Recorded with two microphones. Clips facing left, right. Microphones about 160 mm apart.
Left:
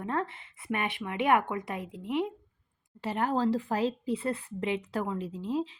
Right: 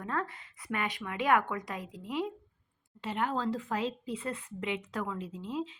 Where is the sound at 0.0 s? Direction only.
25° left (ahead or behind).